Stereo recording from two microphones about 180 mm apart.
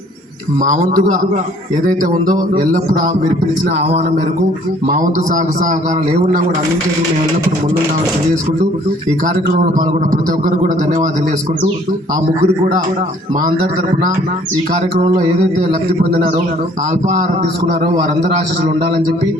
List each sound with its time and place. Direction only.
0.6 s a man's voice: 45° right (ahead or behind)
4.9 s a man's voice: 45° right (ahead or behind)
9.2 s a man's voice: 50° right (ahead or behind)
16.9 s a man's voice: 45° right (ahead or behind)